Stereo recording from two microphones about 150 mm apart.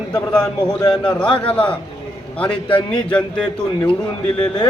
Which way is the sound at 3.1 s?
10° left (ahead or behind).